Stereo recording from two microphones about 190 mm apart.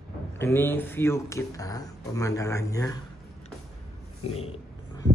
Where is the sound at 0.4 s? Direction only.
10° left (ahead or behind).